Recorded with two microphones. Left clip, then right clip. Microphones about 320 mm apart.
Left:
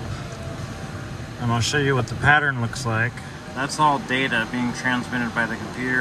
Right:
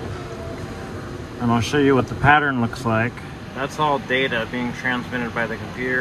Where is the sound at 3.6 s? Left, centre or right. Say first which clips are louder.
Left 1 dB; centre.